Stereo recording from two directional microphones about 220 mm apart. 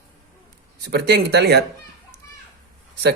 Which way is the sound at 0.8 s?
50° right (ahead or behind).